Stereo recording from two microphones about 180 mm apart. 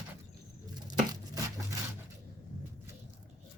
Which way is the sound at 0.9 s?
20° right (ahead or behind).